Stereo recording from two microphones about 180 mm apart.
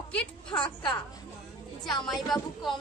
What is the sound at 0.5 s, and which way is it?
A woman's voice, 5° left (ahead or behind).